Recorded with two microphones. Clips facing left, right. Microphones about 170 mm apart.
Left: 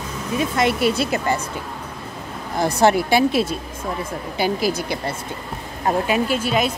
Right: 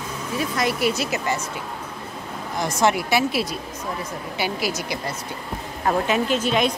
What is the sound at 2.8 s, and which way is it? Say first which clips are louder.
Speech: left 4 dB; 30° left (ahead or behind).